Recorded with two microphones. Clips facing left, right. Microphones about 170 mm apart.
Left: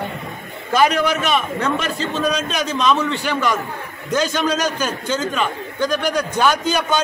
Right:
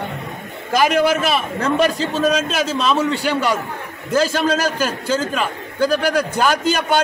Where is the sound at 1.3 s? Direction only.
35° right (ahead or behind).